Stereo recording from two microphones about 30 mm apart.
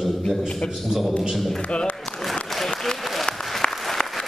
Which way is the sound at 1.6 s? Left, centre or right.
Left.